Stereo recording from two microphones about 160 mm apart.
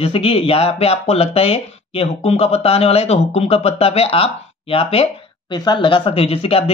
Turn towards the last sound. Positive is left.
turn(degrees=35)  # may be behind; listen again after turning